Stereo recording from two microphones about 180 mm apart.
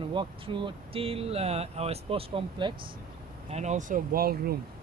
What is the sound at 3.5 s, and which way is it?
Speech, 40° right (ahead or behind).